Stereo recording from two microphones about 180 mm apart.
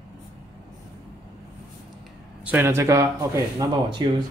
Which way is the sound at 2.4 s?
10° right (ahead or behind).